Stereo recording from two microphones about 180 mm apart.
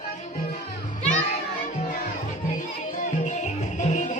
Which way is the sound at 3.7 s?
40° left (ahead or behind).